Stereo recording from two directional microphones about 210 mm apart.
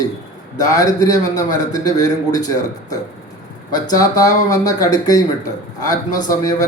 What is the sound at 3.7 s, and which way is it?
Speech, 15° left (ahead or behind).